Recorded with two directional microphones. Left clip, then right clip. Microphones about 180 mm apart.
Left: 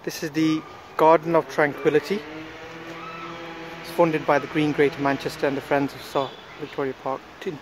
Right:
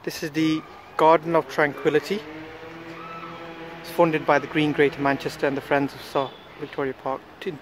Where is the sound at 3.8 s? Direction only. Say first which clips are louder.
Even; centre (ahead or behind).